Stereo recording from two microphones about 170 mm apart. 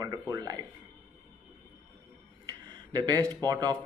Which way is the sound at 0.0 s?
20° right (ahead or behind).